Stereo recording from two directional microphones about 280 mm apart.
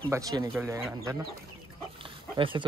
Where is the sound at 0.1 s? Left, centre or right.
Centre.